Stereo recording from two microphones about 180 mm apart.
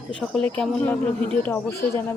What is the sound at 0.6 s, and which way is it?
Speech, 5° left (ahead or behind).